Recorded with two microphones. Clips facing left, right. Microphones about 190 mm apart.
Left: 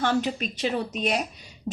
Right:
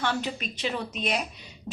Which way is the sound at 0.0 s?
45° left (ahead or behind).